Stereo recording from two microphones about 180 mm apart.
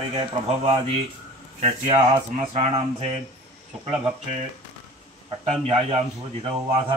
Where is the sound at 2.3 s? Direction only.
40° right (ahead or behind).